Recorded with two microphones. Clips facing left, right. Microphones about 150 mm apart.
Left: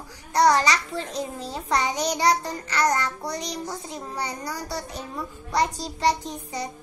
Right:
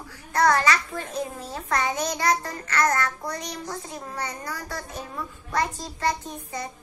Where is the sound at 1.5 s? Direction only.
15° left (ahead or behind).